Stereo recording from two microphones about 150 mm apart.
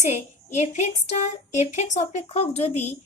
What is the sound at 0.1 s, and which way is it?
A woman's voice, 50° left (ahead or behind).